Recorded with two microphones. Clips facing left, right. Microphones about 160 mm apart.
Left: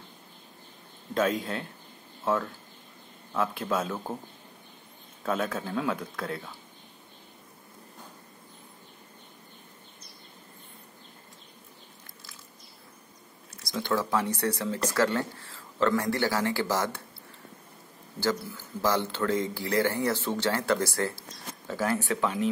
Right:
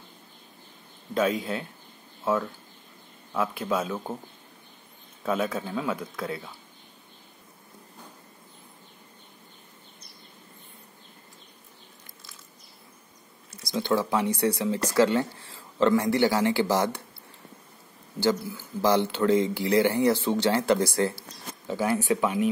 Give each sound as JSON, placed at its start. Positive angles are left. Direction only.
{"t": 1.1, "sound": "speech", "side_deg": 0}
{"t": 3.3, "sound": "speech", "side_deg": -5}
{"t": 5.2, "sound": "speech", "side_deg": -5}
{"t": 13.5, "sound": "speech", "side_deg": -15}
{"t": 18.2, "sound": "speech", "side_deg": -15}